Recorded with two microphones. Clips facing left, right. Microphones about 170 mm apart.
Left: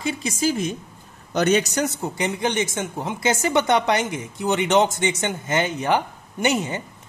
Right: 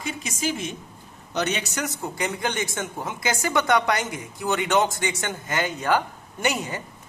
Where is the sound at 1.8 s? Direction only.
25° left (ahead or behind).